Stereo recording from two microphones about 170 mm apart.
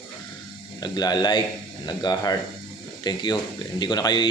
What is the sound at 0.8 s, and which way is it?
Speech, 25° left (ahead or behind).